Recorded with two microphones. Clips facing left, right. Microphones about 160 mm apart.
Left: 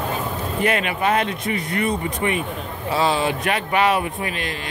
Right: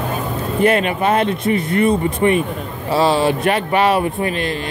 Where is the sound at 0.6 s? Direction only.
35° right (ahead or behind).